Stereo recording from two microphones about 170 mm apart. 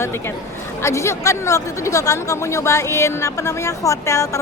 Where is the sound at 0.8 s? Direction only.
15° left (ahead or behind).